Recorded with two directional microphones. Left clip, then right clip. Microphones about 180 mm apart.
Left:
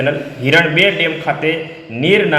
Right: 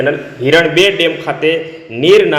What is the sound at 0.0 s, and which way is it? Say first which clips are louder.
A man's voice: right 3 dB; 15° right (ahead or behind).